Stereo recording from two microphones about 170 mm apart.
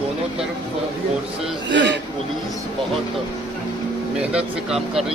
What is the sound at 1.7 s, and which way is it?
Speech, 90° right.